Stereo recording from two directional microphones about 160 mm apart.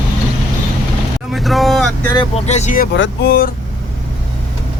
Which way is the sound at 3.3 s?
65° left (ahead or behind).